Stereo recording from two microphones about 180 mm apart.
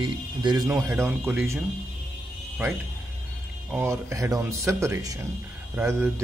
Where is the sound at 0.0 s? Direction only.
25° right (ahead or behind).